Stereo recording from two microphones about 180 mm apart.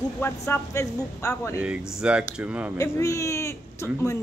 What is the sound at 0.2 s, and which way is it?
Speech, 15° left (ahead or behind).